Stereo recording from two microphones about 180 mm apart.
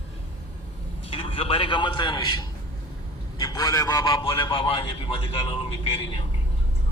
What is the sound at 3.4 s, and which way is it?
A man's voice, 20° left (ahead or behind).